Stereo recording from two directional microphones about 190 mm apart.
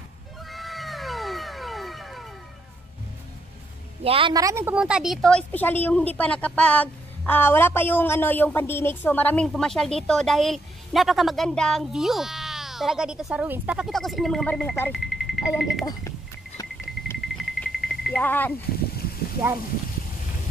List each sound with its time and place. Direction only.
0.5 s cat: centre (ahead or behind)
4.0 s a woman's voice: 30° right (ahead or behind); by 15.8 s centre (ahead or behind)
15.8 s speech: 20° left (ahead or behind)
17.2 s a sound: centre (ahead or behind)